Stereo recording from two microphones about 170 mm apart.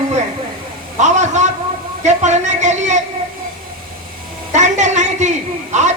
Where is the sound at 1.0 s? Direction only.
45° right (ahead or behind).